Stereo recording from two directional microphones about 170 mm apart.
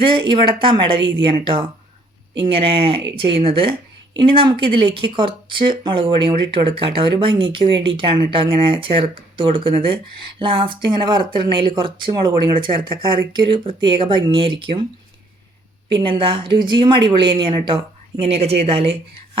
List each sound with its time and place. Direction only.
0.0 s speech: 30° right (ahead or behind)
15.9 s speech: 30° right (ahead or behind)